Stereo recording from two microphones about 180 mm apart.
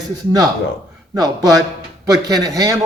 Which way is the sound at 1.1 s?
20° right (ahead or behind).